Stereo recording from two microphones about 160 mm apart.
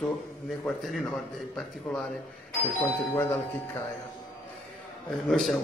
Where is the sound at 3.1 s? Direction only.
15° left (ahead or behind).